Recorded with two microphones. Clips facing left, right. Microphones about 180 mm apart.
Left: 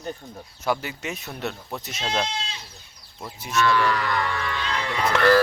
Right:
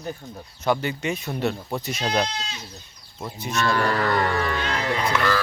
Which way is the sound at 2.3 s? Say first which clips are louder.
Even; 30° left (ahead or behind).